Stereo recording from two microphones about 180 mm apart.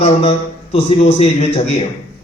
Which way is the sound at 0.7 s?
35° left (ahead or behind).